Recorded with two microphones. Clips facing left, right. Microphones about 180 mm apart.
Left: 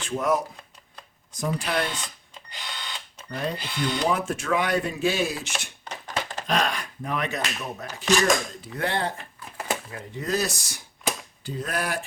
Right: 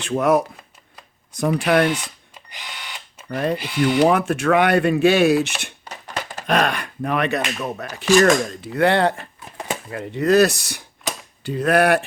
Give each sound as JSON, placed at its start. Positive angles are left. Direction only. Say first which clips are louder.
{"t": 0.0, "sound": "speech", "louder": "right 7 dB", "side_deg": -70}
{"t": 1.9, "sound": "cash register", "louder": "right 10 dB", "side_deg": -10}
{"t": 3.2, "sound": "speech", "louder": "right 8 dB", "side_deg": -55}
{"t": 3.6, "sound": "speech", "louder": "right 9 dB", "side_deg": -10}
{"t": 4.0, "sound": "speech", "louder": "right 9 dB", "side_deg": -65}